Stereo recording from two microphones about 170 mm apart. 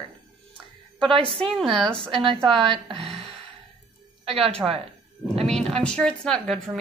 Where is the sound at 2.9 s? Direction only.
35° right (ahead or behind).